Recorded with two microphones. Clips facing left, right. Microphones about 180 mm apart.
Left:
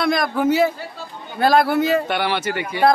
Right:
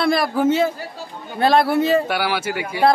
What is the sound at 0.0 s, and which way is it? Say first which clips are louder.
Speech: right 1 dB; 30° right (ahead or behind).